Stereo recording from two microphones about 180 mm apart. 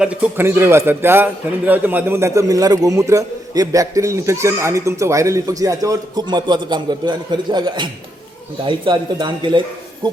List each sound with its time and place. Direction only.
0.0 s a man's voice: 5° right (ahead or behind); by 10.1 s 25° right (ahead or behind)